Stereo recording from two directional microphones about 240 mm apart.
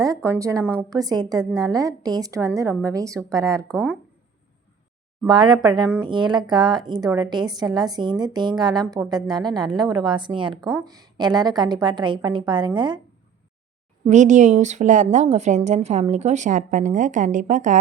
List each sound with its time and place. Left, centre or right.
0.0 s a woman's voice: centre
5.2 s a woman's voice: centre
10.5 s speech: centre
10.8 s a woman's voice: centre
14.1 s a woman's voice: right